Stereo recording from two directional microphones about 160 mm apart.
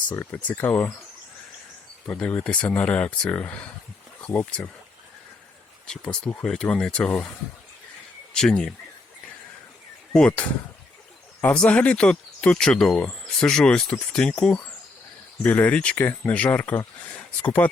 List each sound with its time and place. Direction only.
0.1 s speech: 10° left (ahead or behind)
2.0 s speech: 5° left (ahead or behind)
5.8 s speech: 5° left (ahead or behind)
8.4 s speech: 5° left (ahead or behind)
10.1 s speech: 10° left (ahead or behind)